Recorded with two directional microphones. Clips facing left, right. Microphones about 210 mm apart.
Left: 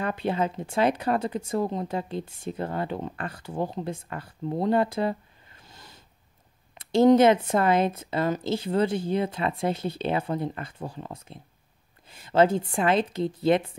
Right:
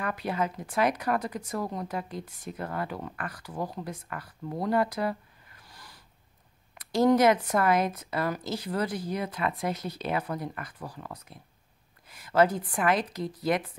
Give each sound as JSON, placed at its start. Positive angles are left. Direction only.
{"t": 0.0, "sound": "speech", "side_deg": 25}